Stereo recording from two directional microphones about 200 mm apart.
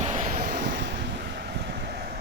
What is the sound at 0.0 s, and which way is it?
Vehicle, 40° right (ahead or behind).